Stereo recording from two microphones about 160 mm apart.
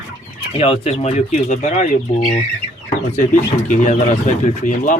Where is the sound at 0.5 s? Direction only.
40° left (ahead or behind).